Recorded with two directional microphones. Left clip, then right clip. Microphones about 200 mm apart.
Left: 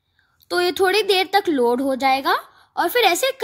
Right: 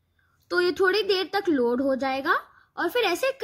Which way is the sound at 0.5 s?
15° left (ahead or behind).